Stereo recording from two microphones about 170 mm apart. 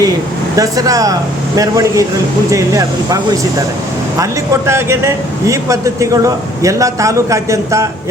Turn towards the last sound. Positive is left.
turn(degrees=-15)  # may be behind; listen again after turning